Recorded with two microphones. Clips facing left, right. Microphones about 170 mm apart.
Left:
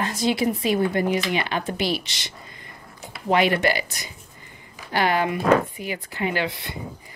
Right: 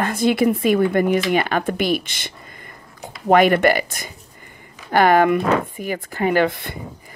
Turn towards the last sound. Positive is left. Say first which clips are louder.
# right 8 dB
turn(degrees=-50)  # may be behind; listen again after turning